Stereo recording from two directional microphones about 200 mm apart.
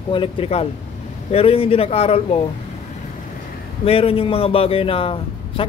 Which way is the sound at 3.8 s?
30° left (ahead or behind).